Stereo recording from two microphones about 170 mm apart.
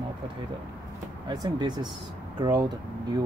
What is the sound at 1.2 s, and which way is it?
Speech, 25° right (ahead or behind).